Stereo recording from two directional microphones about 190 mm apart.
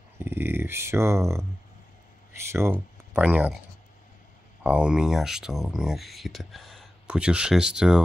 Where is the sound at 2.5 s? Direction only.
10° right (ahead or behind).